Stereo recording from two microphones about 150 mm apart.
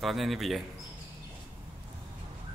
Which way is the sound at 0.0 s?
Centre (ahead or behind).